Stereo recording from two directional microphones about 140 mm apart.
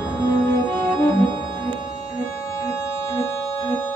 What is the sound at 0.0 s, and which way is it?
Music, 25° left (ahead or behind).